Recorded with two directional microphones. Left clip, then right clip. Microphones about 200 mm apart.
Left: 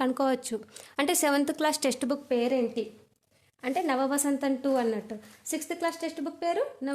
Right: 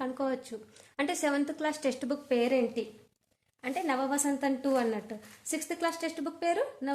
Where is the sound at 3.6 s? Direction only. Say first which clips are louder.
Left 4 dB; 40° left (ahead or behind).